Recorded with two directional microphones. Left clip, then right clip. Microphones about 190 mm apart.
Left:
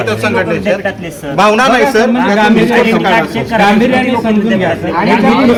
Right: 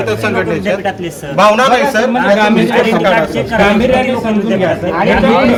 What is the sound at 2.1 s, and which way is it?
A man's voice, 60° right (ahead or behind).